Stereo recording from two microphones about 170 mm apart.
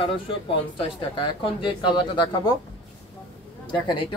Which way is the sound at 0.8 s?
30° left (ahead or behind).